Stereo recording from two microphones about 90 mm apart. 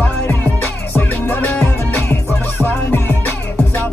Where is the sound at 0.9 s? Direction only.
20° left (ahead or behind).